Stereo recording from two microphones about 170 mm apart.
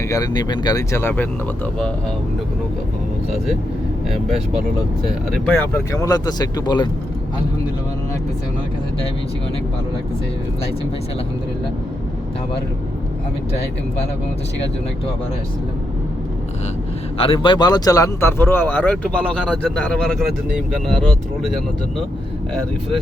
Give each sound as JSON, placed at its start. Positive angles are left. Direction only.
{"t": 0.1, "sound": "speech", "side_deg": 25}
{"t": 5.5, "sound": "speech", "side_deg": 15}
{"t": 17.2, "sound": "speech", "side_deg": 30}